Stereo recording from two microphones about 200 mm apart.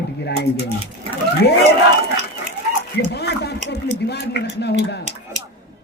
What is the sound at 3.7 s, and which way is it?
A man's voice, 55° left (ahead or behind).